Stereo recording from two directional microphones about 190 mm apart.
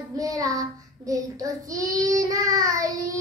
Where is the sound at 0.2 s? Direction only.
20° right (ahead or behind).